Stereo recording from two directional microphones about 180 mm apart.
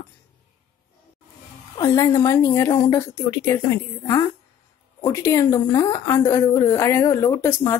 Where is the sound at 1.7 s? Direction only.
20° left (ahead or behind).